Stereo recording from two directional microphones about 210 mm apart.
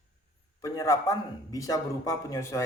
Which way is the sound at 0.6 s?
15° left (ahead or behind).